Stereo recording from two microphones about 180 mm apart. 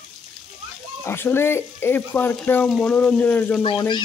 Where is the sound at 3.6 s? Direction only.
25° left (ahead or behind).